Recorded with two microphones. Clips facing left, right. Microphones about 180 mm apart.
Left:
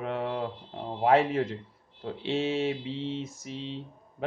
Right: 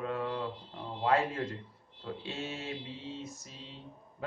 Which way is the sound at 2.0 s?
90° left.